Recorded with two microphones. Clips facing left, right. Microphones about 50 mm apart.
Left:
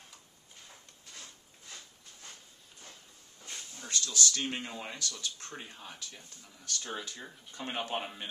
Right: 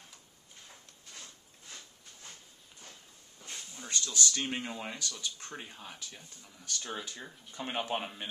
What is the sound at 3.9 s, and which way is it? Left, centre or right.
Speech, centre.